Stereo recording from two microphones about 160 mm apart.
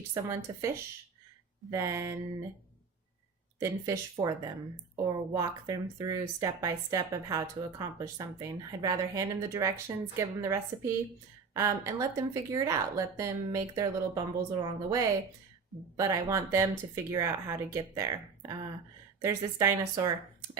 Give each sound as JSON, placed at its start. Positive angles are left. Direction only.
{"t": 0.1, "sound": "speech", "side_deg": -20}
{"t": 3.6, "sound": "speech", "side_deg": -20}